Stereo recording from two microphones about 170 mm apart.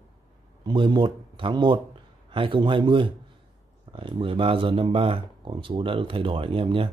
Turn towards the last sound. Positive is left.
turn(degrees=-30)  # may be behind; listen again after turning